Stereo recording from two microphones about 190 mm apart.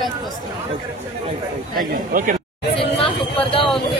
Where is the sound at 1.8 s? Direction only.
45° right (ahead or behind).